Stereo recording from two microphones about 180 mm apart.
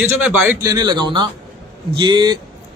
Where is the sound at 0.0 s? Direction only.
10° right (ahead or behind).